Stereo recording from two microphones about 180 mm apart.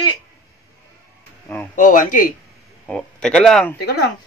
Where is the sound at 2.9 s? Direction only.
5° left (ahead or behind).